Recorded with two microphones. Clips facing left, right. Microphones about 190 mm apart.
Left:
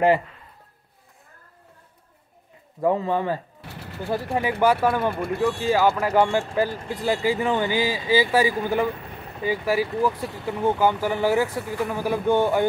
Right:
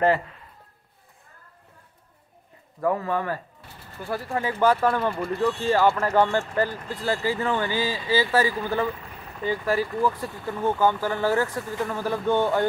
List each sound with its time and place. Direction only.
2.8 s speech: 20° left (ahead or behind)
3.6 s machine gun: 75° left (ahead or behind)
4.3 s speech: 15° left (ahead or behind)